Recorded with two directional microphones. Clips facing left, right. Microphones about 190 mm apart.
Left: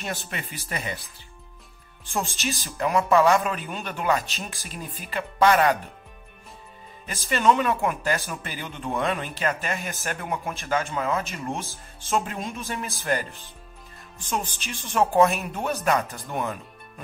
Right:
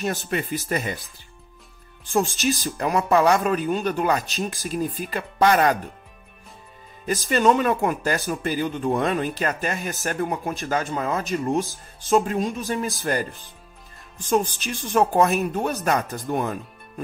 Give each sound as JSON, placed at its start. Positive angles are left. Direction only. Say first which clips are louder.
{"t": 0.0, "sound": "speech", "louder": "right 7 dB", "side_deg": -40}
{"t": 2.1, "sound": "speech", "louder": "right 7 dB", "side_deg": -40}
{"t": 7.1, "sound": "speech", "louder": "right 3 dB", "side_deg": -40}
{"t": 15.0, "sound": "speech", "louder": "right 1 dB", "side_deg": -40}